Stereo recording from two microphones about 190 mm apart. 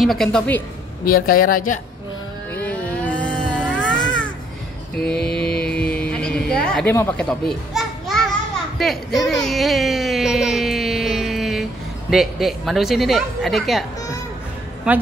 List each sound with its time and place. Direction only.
0.0 s a woman's voice: centre (ahead or behind)
1.0 s speech: 45° left (ahead or behind)
2.5 s a sound: 10° left (ahead or behind)
5.0 s mantra: 5° left (ahead or behind)
8.7 s a sound: centre (ahead or behind)
12.1 s a woman's voice: centre (ahead or behind)
14.9 s a woman's voice: 5° right (ahead or behind)